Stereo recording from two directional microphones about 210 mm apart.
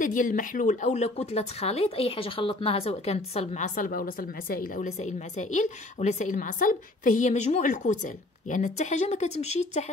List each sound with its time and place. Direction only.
0.0 s a woman's voice: 40° left (ahead or behind)